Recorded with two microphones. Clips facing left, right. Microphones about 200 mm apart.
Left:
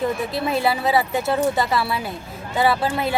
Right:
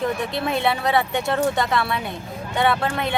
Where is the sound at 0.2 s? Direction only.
Centre (ahead or behind).